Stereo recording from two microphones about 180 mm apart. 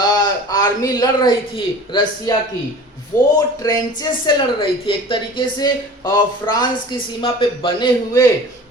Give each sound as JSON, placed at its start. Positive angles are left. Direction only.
{"t": 0.2, "sound": "a man's voice", "side_deg": 20}
{"t": 3.1, "sound": "a man's voice", "side_deg": 15}